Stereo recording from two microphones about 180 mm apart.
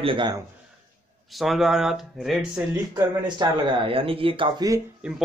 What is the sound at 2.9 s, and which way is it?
Speech, 25° right (ahead or behind).